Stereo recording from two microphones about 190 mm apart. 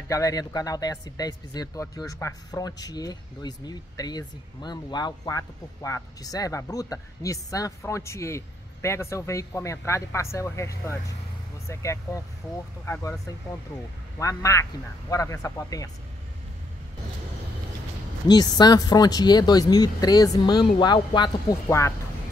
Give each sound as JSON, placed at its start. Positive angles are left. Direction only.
{"t": 0.1, "sound": "speech", "side_deg": 15}
{"t": 14.1, "sound": "speech", "side_deg": 15}
{"t": 18.3, "sound": "speech", "side_deg": 20}